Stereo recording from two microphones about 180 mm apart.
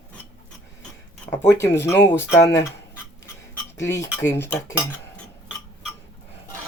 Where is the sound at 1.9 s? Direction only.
15° left (ahead or behind).